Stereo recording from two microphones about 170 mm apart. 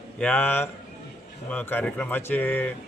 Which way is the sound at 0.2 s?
10° left (ahead or behind).